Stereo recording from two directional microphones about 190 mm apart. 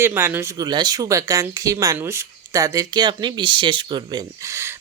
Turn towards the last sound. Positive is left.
turn(degrees=-15)  # may be behind; listen again after turning